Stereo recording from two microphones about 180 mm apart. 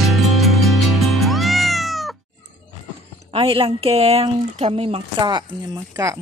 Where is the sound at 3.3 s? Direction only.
30° right (ahead or behind).